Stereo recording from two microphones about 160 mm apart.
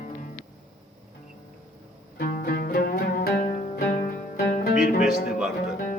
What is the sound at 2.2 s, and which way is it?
Music, 70° left (ahead or behind).